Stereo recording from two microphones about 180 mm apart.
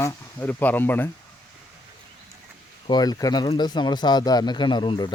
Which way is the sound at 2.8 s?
25° left (ahead or behind).